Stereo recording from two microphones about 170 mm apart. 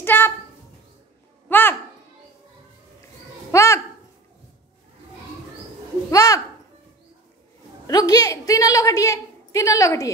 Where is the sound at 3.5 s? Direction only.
20° left (ahead or behind).